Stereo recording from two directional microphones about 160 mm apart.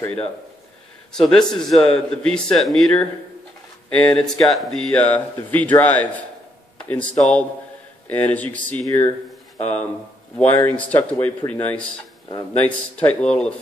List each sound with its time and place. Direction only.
1.1 s speech: 5° left (ahead or behind)
9.6 s speech: 45° left (ahead or behind)
10.3 s speech: 10° left (ahead or behind)